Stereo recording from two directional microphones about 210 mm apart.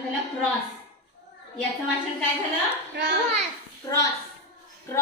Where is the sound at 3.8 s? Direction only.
15° left (ahead or behind).